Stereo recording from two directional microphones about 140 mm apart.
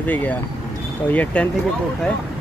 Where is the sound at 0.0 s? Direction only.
10° left (ahead or behind).